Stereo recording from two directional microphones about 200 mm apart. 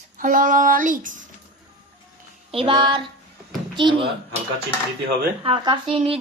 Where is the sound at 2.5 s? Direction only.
25° right (ahead or behind).